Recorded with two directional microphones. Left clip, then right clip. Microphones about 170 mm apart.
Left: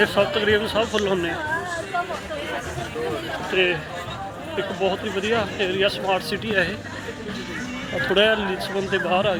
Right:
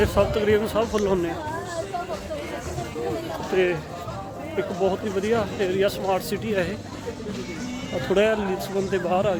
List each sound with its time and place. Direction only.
0.0 s speech: 20° right (ahead or behind)
3.5 s speech: 25° right (ahead or behind)
8.1 s a man's voice: 15° right (ahead or behind)